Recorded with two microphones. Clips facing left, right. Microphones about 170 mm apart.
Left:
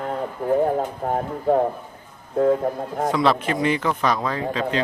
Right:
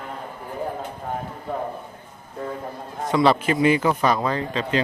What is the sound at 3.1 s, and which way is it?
Speech, centre (ahead or behind).